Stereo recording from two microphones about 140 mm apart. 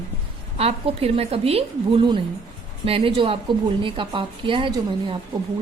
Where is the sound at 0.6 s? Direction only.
45° right (ahead or behind).